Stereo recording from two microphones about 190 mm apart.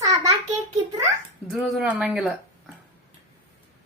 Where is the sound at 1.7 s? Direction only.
5° right (ahead or behind).